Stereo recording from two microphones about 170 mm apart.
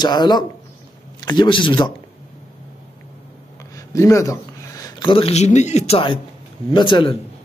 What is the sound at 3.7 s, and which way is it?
A man's voice, 20° left (ahead or behind).